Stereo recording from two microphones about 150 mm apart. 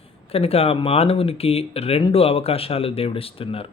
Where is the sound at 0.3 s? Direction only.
40° left (ahead or behind).